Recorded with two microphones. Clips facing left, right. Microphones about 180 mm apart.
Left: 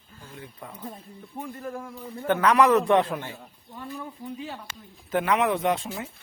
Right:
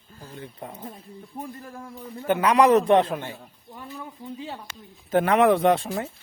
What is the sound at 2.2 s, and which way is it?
A man's voice, 10° right (ahead or behind).